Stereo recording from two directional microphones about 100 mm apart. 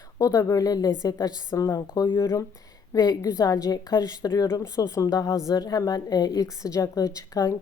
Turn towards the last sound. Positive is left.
turn(degrees=35)  # may be behind; listen again after turning